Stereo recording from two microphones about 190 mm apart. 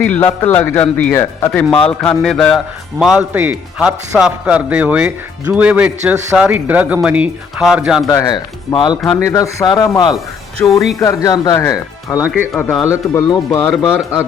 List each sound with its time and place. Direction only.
0.1 s speech: 10° left (ahead or behind)
1.8 s mantra: 5° left (ahead or behind)
3.0 s speech: 5° right (ahead or behind)
8.0 s speech: 20° left (ahead or behind)
10.6 s speech: 5° left (ahead or behind)
11.0 s speech: 20° left (ahead or behind)
12.2 s speech: 5° right (ahead or behind)
12.8 s speech: 15° left (ahead or behind)